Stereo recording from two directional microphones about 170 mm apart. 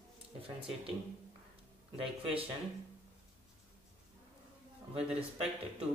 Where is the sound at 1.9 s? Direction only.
35° right (ahead or behind).